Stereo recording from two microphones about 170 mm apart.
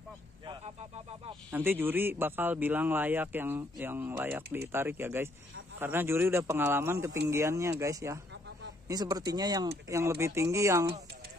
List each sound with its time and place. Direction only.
1.5 s speech: 10° right (ahead or behind)